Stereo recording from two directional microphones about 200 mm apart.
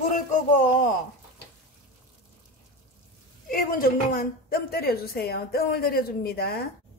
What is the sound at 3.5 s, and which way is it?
A woman's voice, 45° left (ahead or behind).